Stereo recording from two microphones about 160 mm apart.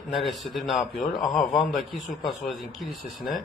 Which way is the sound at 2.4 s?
Centre (ahead or behind).